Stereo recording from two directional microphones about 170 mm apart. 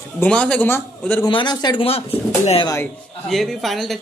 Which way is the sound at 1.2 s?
25° left (ahead or behind).